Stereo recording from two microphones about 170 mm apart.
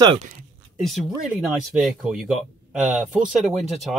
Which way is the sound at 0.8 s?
Centre (ahead or behind).